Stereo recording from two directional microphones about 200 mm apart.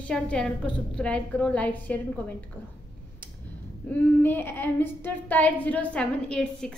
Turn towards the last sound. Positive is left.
turn(degrees=5)  # may be behind; listen again after turning